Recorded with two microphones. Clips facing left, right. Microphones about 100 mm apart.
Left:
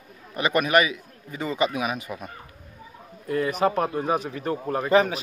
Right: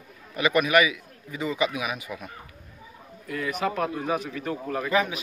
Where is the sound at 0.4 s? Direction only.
35° left (ahead or behind).